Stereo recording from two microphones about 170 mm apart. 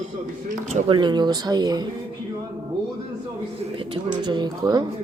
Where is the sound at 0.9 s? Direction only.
25° right (ahead or behind).